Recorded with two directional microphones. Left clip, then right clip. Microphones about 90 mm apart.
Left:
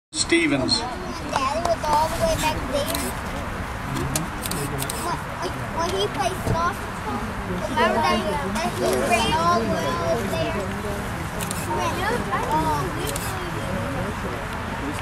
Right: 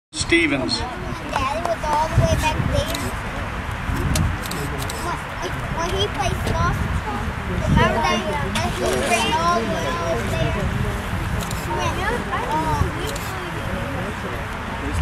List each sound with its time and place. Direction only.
0.3 s speech: centre (ahead or behind)
5.8 s speech: centre (ahead or behind)
7.7 s speech: centre (ahead or behind)
11.7 s speech: centre (ahead or behind)